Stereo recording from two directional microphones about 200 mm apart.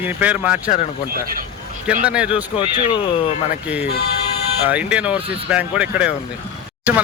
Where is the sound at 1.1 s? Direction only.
45° right (ahead or behind).